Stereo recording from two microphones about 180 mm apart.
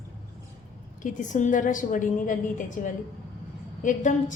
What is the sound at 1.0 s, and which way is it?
A woman's voice, 45° left (ahead or behind).